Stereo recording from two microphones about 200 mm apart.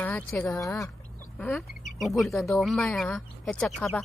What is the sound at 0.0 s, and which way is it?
Speech, 10° left (ahead or behind).